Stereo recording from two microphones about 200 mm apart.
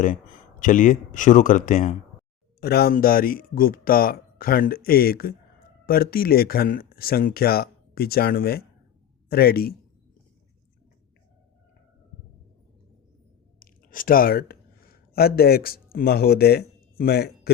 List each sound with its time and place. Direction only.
0.6 s speech: 40° left (ahead or behind)
2.6 s speech: 50° left (ahead or behind)
13.6 s speech: 45° left (ahead or behind)